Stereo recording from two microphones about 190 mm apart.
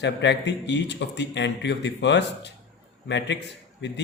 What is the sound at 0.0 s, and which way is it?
Speech, 65° left (ahead or behind).